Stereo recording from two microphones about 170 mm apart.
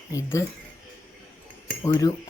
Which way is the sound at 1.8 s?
20° left (ahead or behind).